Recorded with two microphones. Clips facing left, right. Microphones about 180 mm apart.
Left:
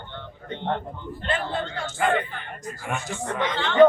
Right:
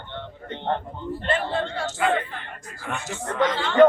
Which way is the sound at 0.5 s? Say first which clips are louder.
Right 1 dB; 30° right (ahead or behind).